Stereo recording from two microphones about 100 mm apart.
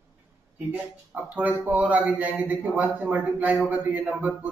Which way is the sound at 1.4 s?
15° right (ahead or behind).